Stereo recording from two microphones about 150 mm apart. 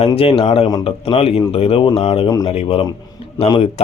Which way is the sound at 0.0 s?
40° left (ahead or behind).